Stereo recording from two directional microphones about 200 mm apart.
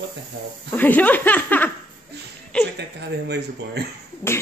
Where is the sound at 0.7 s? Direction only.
10° left (ahead or behind).